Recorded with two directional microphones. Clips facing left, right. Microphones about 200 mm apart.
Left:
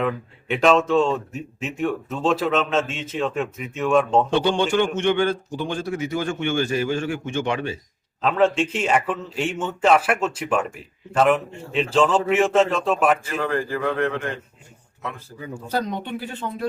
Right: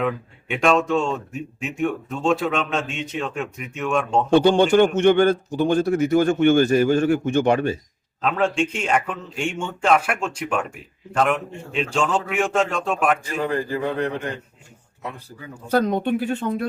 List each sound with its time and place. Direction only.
0.0 s speech: centre (ahead or behind)
4.4 s a man's voice: 45° right (ahead or behind)
8.2 s speech: centre (ahead or behind)
13.2 s a man's voice: 15° right (ahead or behind)
15.7 s a man's voice: 50° right (ahead or behind)